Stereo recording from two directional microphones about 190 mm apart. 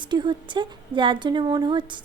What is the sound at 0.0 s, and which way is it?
A woman's voice, 25° right (ahead or behind).